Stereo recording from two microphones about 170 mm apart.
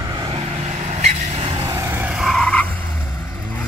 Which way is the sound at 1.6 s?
15° right (ahead or behind).